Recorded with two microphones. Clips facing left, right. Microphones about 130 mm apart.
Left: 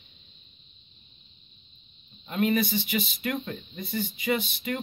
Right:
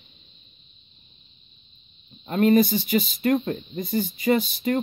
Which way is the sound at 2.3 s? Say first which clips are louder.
Right 7 dB; 40° right (ahead or behind).